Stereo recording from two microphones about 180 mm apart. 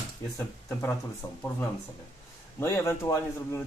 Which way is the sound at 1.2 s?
10° left (ahead or behind).